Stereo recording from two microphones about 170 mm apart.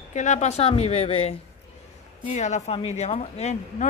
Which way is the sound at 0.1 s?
45° left (ahead or behind).